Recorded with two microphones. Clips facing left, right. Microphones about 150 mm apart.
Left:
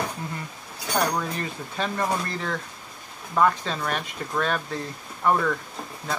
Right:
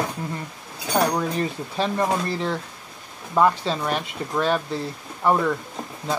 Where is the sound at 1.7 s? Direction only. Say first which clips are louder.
Right 3 dB; 25° right (ahead or behind).